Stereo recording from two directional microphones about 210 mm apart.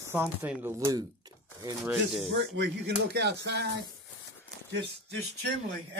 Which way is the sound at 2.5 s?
55° right (ahead or behind).